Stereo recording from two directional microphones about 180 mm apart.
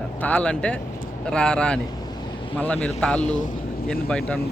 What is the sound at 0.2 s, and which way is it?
Speech, 10° left (ahead or behind).